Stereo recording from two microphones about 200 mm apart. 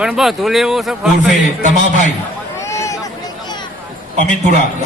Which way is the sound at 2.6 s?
15° left (ahead or behind).